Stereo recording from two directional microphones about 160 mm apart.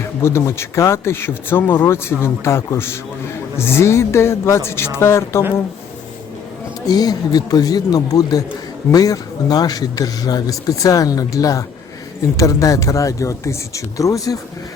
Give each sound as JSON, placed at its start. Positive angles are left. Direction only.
{"t": 0.2, "sound": "speech", "side_deg": 15}
{"t": 6.8, "sound": "speech", "side_deg": 25}